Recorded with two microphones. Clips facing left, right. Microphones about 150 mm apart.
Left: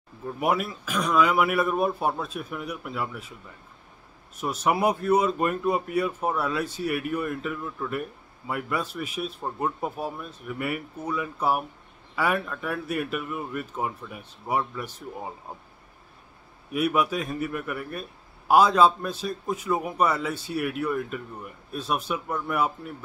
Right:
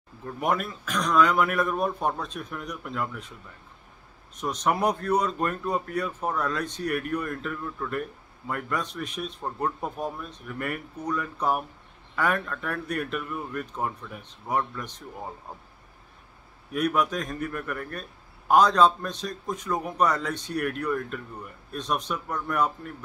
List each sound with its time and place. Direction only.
0.4 s speech: 10° left (ahead or behind)
4.4 s speech: 5° left (ahead or behind)
16.7 s speech: 10° left (ahead or behind)